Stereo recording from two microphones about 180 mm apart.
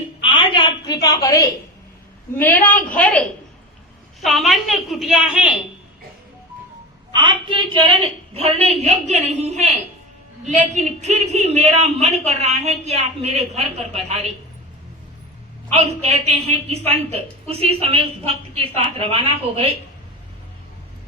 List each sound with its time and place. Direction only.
0.2 s a sound: 25° left (ahead or behind)
2.3 s a woman's voice: 10° left (ahead or behind); by 5.5 s 5° right (ahead or behind)
7.1 s a woman's voice: 25° right (ahead or behind)
15.7 s a woman's voice: 35° right (ahead or behind)